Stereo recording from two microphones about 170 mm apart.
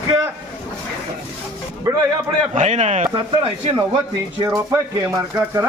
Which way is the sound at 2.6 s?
45° right (ahead or behind).